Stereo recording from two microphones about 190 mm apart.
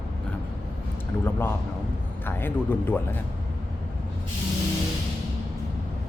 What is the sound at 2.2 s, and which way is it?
Speech, 10° left (ahead or behind).